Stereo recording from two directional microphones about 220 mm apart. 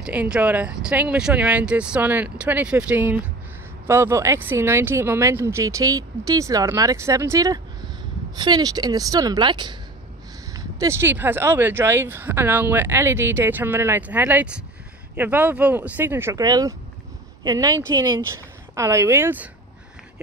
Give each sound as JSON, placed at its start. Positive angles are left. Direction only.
{"t": 0.0, "sound": "a woman's voice", "side_deg": -5}